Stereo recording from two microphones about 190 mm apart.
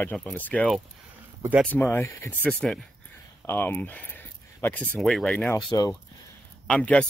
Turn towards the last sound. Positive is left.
turn(degrees=5)  # may be behind; listen again after turning